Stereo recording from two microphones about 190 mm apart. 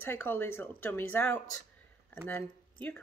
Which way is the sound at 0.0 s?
10° left (ahead or behind).